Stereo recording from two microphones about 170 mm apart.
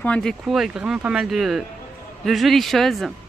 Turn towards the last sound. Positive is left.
turn(degrees=0)  # may be behind; listen again after turning